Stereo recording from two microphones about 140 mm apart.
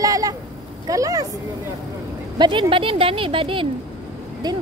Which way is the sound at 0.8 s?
25° right (ahead or behind).